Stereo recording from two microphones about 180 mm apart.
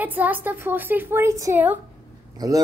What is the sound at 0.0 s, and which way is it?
A woman's voice, 10° right (ahead or behind).